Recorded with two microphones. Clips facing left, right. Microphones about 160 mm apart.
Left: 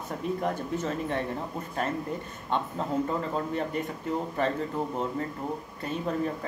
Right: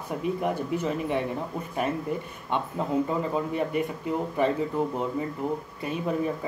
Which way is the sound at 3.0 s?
10° right (ahead or behind).